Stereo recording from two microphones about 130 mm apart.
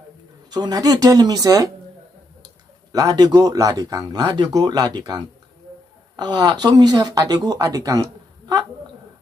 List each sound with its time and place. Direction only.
0.5 s speech: 30° right (ahead or behind)
2.9 s speech: 30° right (ahead or behind)